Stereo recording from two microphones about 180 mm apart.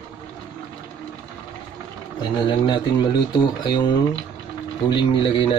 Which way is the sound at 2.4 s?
25° left (ahead or behind).